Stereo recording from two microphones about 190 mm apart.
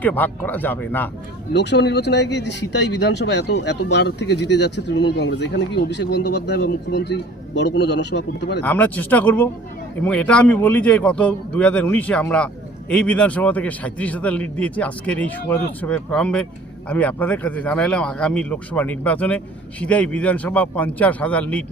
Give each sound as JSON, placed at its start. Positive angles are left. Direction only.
{"t": 0.0, "sound": "a man's voice", "side_deg": 10}
{"t": 1.5, "sound": "speech", "side_deg": 65}
{"t": 8.6, "sound": "a man's voice", "side_deg": 10}